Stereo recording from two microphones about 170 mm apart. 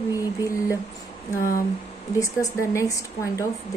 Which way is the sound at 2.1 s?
20° left (ahead or behind).